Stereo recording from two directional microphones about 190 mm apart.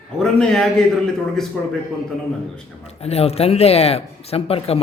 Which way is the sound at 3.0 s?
35° left (ahead or behind).